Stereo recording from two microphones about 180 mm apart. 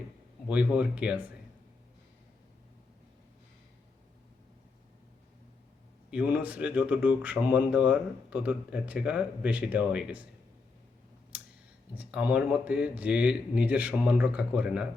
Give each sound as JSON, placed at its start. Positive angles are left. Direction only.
{"t": 0.5, "sound": "speech", "side_deg": -10}
{"t": 6.1, "sound": "speech", "side_deg": -10}
{"t": 11.3, "sound": "clicking", "side_deg": -5}
{"t": 11.9, "sound": "speech", "side_deg": -5}